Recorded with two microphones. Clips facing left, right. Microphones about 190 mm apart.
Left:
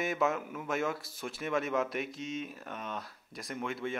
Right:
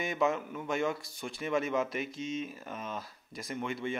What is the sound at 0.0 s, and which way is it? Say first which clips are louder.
Speech: right 1 dB; centre (ahead or behind).